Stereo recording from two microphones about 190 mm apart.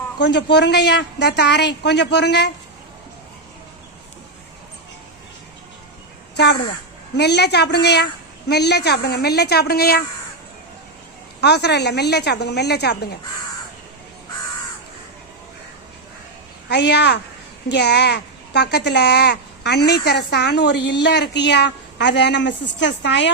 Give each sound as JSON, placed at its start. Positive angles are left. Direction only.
{"t": 0.2, "sound": "speech", "side_deg": 65}
{"t": 6.3, "sound": "speech", "side_deg": 60}
{"t": 11.3, "sound": "speech", "side_deg": 60}
{"t": 16.6, "sound": "speech", "side_deg": 65}